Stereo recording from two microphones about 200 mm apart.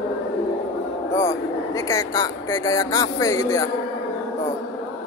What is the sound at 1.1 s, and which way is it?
Speech, 15° left (ahead or behind).